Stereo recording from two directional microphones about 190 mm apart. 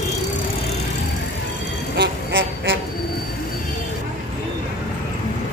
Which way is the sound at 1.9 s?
80° right.